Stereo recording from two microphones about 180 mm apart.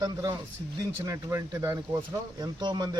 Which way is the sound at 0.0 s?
25° right (ahead or behind).